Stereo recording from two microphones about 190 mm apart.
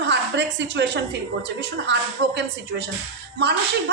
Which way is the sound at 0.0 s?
65° right (ahead or behind).